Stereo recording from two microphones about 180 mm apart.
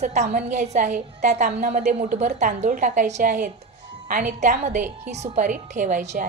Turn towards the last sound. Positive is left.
turn(degrees=-40)  # may be behind; listen again after turning